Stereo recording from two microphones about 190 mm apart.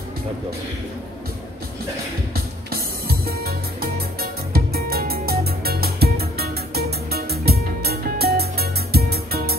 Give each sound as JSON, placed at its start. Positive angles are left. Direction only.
{"t": 2.7, "sound": "music", "side_deg": -55}
{"t": 4.7, "sound": "music", "side_deg": -55}